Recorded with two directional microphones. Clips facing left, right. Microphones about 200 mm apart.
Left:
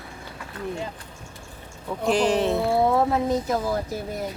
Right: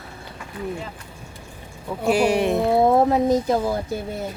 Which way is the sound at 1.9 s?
10° right (ahead or behind).